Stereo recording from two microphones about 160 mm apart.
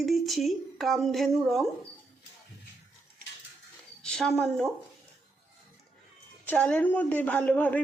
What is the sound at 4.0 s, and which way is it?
Speech, 5° left (ahead or behind).